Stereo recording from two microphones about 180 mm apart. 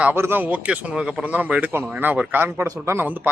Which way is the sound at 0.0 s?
10° right (ahead or behind).